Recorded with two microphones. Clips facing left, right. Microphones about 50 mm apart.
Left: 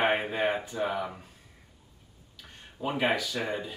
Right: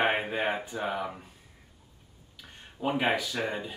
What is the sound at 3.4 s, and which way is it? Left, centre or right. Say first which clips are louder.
Speech: even; centre.